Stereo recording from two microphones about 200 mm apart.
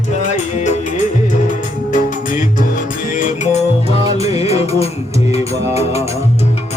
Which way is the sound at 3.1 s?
35° left (ahead or behind).